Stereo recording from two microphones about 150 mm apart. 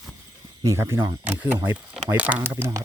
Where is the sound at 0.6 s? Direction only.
20° right (ahead or behind).